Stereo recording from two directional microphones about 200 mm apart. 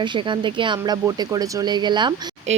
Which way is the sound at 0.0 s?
25° right (ahead or behind).